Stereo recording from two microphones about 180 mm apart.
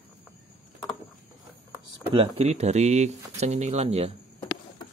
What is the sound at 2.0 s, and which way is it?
Speech, 30° right (ahead or behind).